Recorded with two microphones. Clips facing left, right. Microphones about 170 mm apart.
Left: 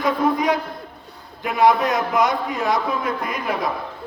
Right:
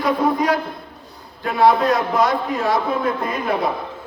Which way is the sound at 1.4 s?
15° left (ahead or behind).